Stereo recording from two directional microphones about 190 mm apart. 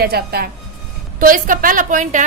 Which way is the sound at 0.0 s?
55° right (ahead or behind).